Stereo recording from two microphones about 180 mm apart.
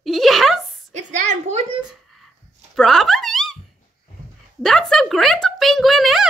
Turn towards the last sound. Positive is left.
turn(degrees=0)  # may be behind; listen again after turning